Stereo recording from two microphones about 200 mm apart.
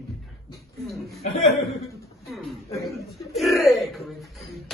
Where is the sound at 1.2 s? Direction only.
35° left (ahead or behind).